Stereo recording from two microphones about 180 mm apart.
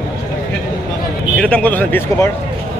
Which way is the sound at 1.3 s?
10° left (ahead or behind).